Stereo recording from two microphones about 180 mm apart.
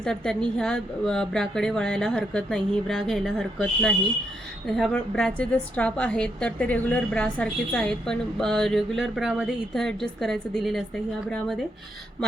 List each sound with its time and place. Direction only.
0.0 s a woman's voice: 5° left (ahead or behind)